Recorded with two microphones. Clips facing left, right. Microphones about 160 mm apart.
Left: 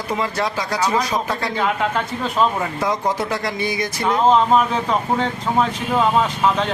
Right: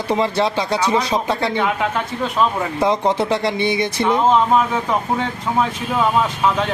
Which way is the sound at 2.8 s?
25° right (ahead or behind).